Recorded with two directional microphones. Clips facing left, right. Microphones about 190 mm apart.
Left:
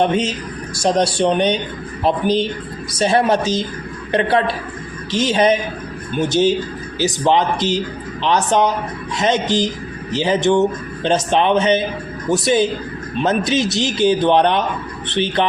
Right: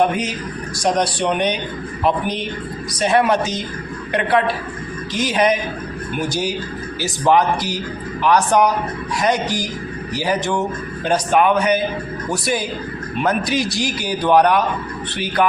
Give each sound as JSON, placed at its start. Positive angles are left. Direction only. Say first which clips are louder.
{"t": 0.0, "sound": "speech", "louder": "left 1 dB", "side_deg": 25}